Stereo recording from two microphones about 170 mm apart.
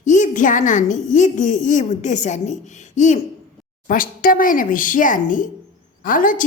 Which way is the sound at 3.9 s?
55° left (ahead or behind).